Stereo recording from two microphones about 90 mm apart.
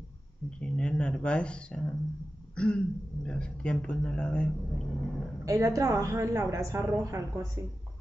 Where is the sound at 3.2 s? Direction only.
10° left (ahead or behind).